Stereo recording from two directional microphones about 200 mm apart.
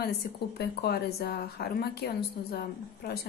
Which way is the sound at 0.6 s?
50° left (ahead or behind).